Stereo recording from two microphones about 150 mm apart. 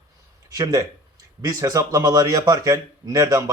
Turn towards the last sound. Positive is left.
turn(degrees=-20)  # may be behind; listen again after turning